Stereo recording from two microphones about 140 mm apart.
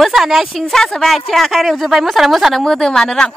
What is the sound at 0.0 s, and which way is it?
Speech, centre (ahead or behind).